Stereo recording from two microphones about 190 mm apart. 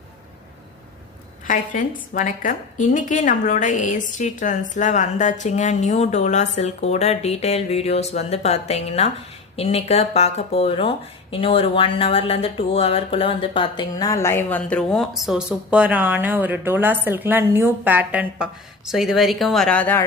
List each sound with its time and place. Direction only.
1.5 s a woman's voice: 45° left (ahead or behind); by 20.1 s 10° left (ahead or behind)